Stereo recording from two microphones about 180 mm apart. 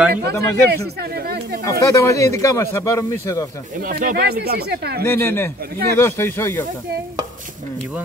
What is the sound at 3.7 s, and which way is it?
Speech, 50° right (ahead or behind).